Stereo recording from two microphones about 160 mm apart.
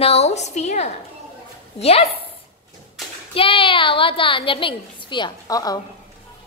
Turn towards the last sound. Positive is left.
turn(degrees=25)  # may be behind; listen again after turning